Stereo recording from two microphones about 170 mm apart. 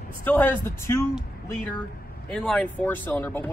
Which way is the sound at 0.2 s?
10° left (ahead or behind).